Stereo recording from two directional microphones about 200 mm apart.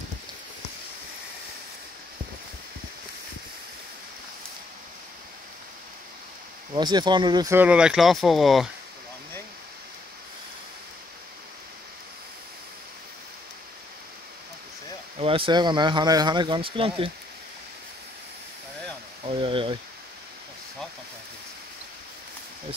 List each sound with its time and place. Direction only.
6.7 s speech: 20° right (ahead or behind); by 8.6 s centre (ahead or behind)
15.1 s speech: 25° right (ahead or behind)
19.2 s a sound: 25° right (ahead or behind)